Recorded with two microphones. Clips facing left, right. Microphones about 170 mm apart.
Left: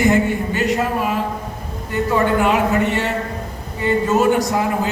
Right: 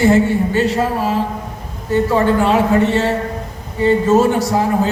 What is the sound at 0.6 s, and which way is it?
Speech, 30° right (ahead or behind).